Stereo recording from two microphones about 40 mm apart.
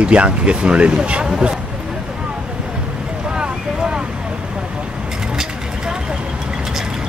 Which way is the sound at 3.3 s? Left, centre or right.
Right.